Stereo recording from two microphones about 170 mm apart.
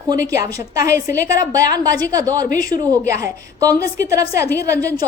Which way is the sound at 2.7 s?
20° right (ahead or behind).